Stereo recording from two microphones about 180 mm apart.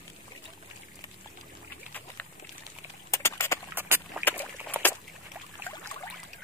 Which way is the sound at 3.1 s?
15° left (ahead or behind).